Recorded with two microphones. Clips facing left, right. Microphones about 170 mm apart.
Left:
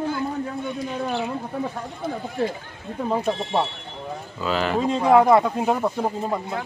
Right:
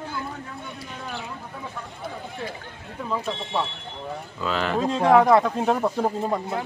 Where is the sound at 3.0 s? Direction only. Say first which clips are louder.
Left 5 dB; 40° left (ahead or behind).